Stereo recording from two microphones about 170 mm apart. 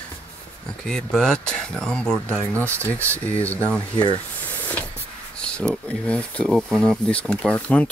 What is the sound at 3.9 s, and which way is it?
Speech, 30° left (ahead or behind).